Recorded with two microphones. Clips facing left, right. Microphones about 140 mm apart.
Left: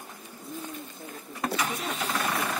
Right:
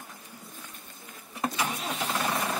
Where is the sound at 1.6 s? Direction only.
25° right (ahead or behind).